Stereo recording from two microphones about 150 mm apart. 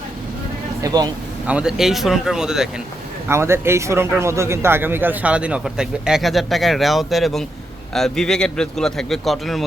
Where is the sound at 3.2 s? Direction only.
15° right (ahead or behind).